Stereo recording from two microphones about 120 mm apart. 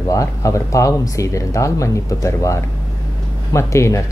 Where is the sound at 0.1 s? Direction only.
25° left (ahead or behind).